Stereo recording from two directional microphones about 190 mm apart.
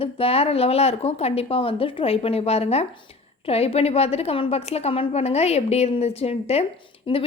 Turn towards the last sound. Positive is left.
turn(degrees=30)  # may be behind; listen again after turning